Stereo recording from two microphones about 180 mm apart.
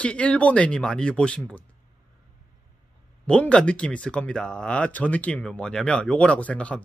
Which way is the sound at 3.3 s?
5° left (ahead or behind).